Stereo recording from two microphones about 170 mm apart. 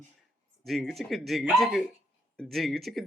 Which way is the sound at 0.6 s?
Centre (ahead or behind).